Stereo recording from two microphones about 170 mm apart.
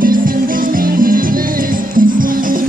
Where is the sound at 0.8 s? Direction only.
55° right (ahead or behind).